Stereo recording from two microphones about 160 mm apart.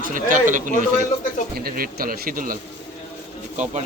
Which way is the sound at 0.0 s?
55° right (ahead or behind).